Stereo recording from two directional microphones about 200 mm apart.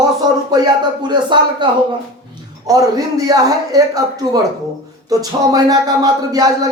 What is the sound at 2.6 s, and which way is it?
A man's voice, 15° right (ahead or behind).